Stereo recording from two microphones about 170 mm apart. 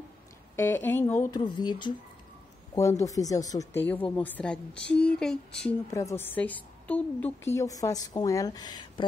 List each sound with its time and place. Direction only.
0.6 s speech: 15° left (ahead or behind)
1.4 s a woman's voice: 25° left (ahead or behind); by 5.4 s 5° left (ahead or behind)
5.9 s a woman's voice: 20° left (ahead or behind)